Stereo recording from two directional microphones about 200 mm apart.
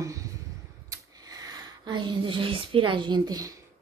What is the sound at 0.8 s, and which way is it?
A woman's voice, 20° right (ahead or behind).